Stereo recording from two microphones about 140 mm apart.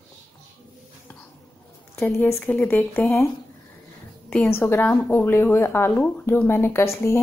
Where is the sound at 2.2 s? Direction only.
15° left (ahead or behind).